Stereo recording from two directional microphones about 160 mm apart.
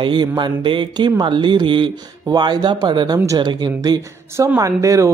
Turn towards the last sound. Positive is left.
turn(degrees=-20)  # may be behind; listen again after turning